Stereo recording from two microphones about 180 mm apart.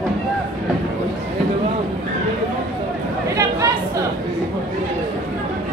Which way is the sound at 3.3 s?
20° right (ahead or behind).